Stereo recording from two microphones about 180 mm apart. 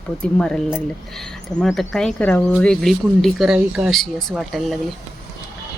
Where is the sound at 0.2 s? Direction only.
5° left (ahead or behind).